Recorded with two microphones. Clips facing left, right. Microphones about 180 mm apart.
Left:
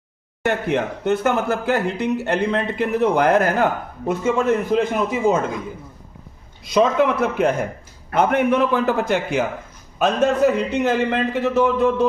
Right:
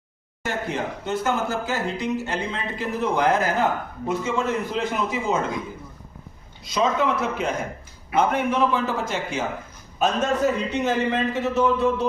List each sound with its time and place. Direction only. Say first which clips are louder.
0.4 s speech: left 7 dB; 65° left (ahead or behind)
6.7 s speech: left 5 dB; 60° left (ahead or behind)